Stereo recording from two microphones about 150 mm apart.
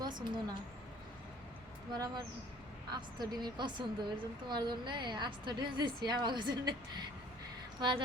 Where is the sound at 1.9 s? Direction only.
30° right (ahead or behind).